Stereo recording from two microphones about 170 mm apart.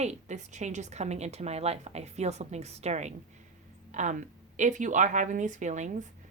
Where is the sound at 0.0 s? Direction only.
45° right (ahead or behind).